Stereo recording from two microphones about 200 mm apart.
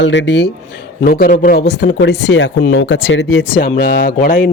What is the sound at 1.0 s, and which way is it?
A man's voice, 45° left (ahead or behind).